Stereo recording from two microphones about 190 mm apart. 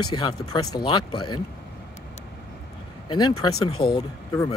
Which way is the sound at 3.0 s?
20° left (ahead or behind).